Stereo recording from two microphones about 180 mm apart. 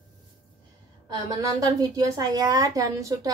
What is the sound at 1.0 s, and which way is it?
A woman's voice, 20° right (ahead or behind).